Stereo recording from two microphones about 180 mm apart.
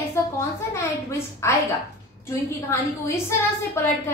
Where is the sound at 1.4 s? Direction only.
15° left (ahead or behind).